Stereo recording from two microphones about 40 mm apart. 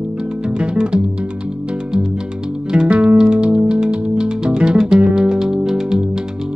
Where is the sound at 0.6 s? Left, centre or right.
Right.